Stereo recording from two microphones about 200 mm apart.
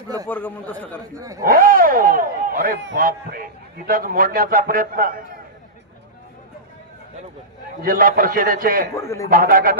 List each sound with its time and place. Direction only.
0.3 s speech: 10° left (ahead or behind)
1.1 s speech: 15° right (ahead or behind)
1.5 s a man's voice: 45° right (ahead or behind)
7.8 s a man's voice: 45° right (ahead or behind)
9.0 s speech: 15° left (ahead or behind)
9.3 s a man's voice: 45° right (ahead or behind)